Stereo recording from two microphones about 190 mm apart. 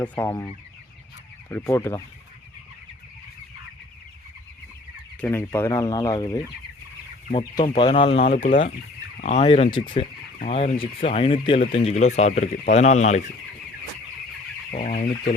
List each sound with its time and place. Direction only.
0.0 s speech: 10° left (ahead or behind)
5.2 s speech: 15° left (ahead or behind)
7.7 s speech: 25° left (ahead or behind)
14.7 s speech: 40° left (ahead or behind)